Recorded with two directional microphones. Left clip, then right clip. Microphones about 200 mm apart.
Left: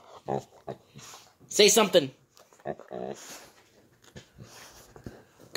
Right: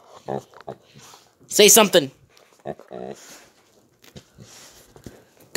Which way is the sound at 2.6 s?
30° right (ahead or behind).